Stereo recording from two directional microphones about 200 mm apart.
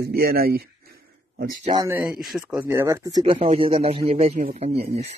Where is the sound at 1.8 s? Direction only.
10° right (ahead or behind).